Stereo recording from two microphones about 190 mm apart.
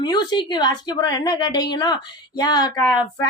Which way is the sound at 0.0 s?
20° left (ahead or behind).